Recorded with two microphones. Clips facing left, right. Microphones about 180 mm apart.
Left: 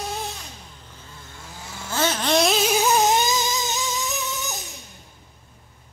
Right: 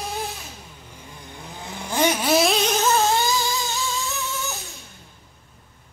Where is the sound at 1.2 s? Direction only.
15° right (ahead or behind); by 4.6 s 15° left (ahead or behind).